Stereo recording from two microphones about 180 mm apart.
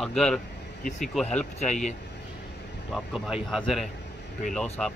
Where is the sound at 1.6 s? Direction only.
40° left (ahead or behind).